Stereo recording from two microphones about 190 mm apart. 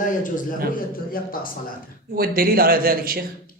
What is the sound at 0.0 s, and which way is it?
A man's voice, 45° left (ahead or behind).